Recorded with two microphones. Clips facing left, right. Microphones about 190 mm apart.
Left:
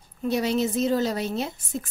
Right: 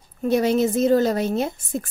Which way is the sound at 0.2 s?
50° right (ahead or behind).